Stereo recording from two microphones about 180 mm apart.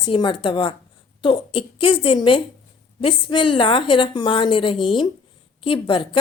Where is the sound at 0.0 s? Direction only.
25° left (ahead or behind).